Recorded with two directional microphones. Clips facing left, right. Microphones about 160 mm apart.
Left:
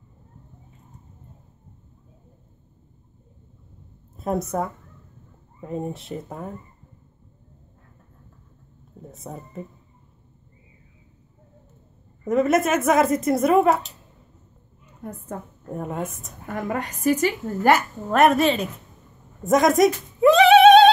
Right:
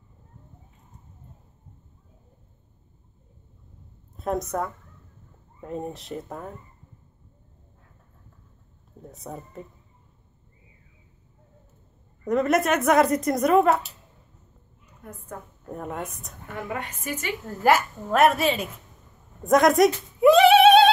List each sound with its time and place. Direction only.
4.2 s speech: 5° left (ahead or behind)
9.0 s speech: centre (ahead or behind)
12.3 s speech: 5° left (ahead or behind)
15.6 s speech: centre (ahead or behind)
16.4 s a woman's voice: 45° left (ahead or behind)
17.5 s speech: centre (ahead or behind)
19.4 s a sound: centre (ahead or behind)